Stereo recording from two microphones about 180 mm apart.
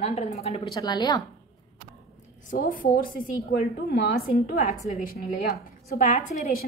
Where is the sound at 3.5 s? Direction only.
60° left (ahead or behind).